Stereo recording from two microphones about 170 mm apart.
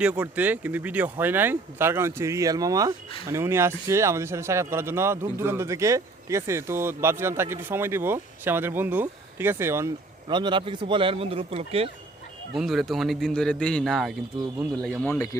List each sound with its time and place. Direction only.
0.0 s speech: 5° right (ahead or behind)
10.2 s speech: 25° right (ahead or behind)
12.5 s a man's voice: centre (ahead or behind)